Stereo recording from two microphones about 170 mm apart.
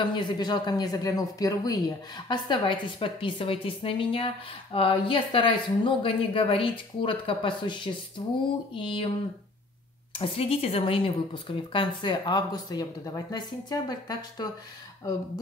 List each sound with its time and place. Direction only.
0.0 s speech: 25° left (ahead or behind)
10.1 s speech: 35° left (ahead or behind)